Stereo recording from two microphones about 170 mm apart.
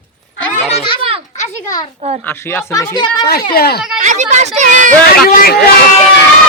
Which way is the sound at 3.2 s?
65° left (ahead or behind).